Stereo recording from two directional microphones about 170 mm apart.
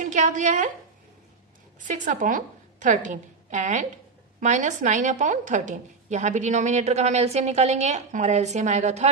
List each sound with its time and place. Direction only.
0.0 s a woman's voice: 45° right (ahead or behind)
1.8 s a woman's voice: 50° right (ahead or behind)